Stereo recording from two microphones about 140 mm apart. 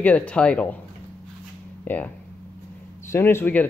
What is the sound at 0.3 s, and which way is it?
Speech, 10° left (ahead or behind).